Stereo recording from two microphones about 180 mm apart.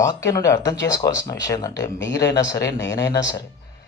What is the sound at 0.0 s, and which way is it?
Speech, 20° left (ahead or behind).